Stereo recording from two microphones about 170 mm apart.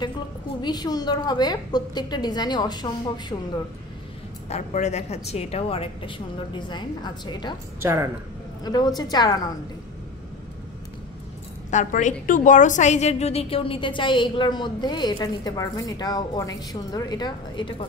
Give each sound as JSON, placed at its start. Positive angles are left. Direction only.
{"t": 0.6, "sound": "a woman's voice", "side_deg": 25}
{"t": 4.5, "sound": "a woman's voice", "side_deg": 40}
{"t": 7.8, "sound": "speech", "side_deg": -15}
{"t": 8.6, "sound": "a woman's voice", "side_deg": 25}
{"t": 11.7, "sound": "a woman's voice", "side_deg": 50}